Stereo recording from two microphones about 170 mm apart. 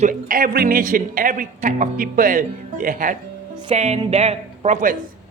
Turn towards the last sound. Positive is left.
turn(degrees=-45)  # may be behind; listen again after turning